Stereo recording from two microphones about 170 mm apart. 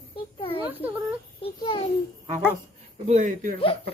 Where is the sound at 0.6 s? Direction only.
10° right (ahead or behind).